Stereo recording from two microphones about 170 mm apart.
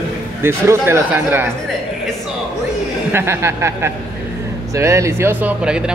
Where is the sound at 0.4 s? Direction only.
15° right (ahead or behind).